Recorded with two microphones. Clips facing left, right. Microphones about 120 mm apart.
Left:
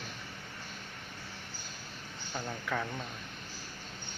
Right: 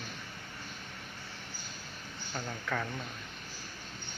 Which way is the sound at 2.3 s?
5° left (ahead or behind).